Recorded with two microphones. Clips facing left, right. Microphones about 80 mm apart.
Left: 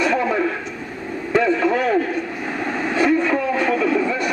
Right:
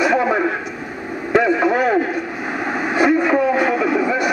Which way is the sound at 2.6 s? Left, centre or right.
Centre.